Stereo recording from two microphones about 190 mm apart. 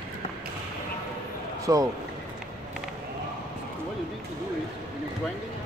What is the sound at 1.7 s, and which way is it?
Speech, 15° right (ahead or behind).